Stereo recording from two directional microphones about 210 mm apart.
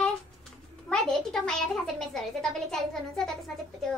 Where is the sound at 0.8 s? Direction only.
5° left (ahead or behind).